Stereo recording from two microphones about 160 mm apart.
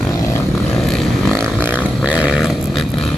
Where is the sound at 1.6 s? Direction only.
10° right (ahead or behind).